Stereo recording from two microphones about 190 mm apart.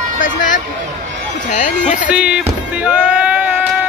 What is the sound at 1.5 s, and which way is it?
Speech, 40° left (ahead or behind).